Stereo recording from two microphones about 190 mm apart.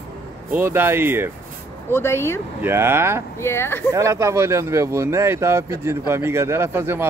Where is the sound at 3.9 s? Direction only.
15° right (ahead or behind).